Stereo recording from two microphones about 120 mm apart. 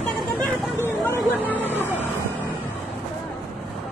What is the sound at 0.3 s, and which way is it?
Hubbub, 20° left (ahead or behind).